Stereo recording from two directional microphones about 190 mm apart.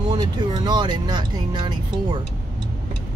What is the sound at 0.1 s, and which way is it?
Speech, 20° right (ahead or behind).